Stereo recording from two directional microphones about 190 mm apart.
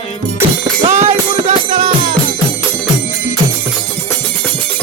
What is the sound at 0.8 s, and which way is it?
Music, 40° right (ahead or behind).